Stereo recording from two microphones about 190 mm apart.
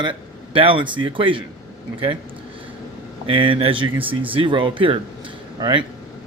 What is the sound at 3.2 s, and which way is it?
Speech, 30° right (ahead or behind).